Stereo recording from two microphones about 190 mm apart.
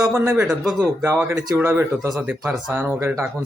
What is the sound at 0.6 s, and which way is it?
Speech, centre (ahead or behind).